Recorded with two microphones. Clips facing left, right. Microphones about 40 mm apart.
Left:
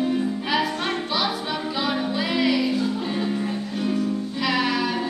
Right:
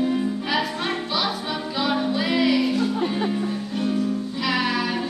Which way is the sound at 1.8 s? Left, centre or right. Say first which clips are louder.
Right 4 dB; centre.